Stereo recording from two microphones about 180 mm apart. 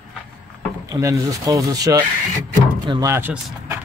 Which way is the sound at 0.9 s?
20° right (ahead or behind).